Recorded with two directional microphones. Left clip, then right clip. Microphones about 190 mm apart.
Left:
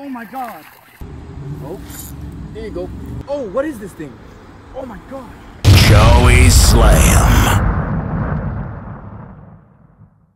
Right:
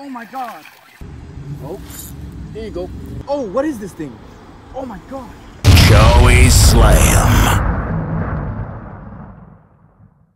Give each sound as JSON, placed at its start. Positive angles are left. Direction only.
{"t": 0.0, "sound": "speech", "side_deg": 20}
{"t": 1.6, "sound": "speech", "side_deg": -15}
{"t": 3.3, "sound": "speech", "side_deg": -25}
{"t": 5.8, "sound": "a sound", "side_deg": 0}